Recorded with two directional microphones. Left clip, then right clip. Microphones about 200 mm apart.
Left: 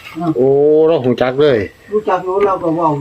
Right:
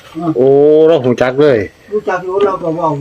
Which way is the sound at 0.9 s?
25° right (ahead or behind).